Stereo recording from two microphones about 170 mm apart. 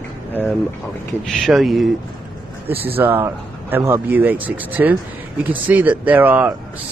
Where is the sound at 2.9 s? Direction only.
10° right (ahead or behind).